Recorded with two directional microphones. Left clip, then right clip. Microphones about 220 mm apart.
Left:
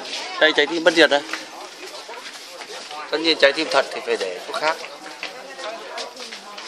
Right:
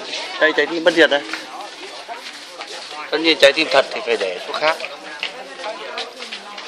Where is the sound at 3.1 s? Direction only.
10° right (ahead or behind).